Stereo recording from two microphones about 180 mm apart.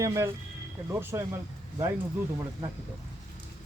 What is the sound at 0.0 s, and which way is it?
Speech, 15° right (ahead or behind).